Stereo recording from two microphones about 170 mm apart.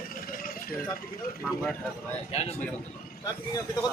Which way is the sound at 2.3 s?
40° left (ahead or behind).